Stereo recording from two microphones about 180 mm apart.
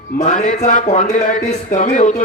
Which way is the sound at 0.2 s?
45° left (ahead or behind).